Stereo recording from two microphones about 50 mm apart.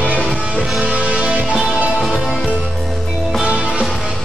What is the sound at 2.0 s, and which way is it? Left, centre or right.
Music, centre.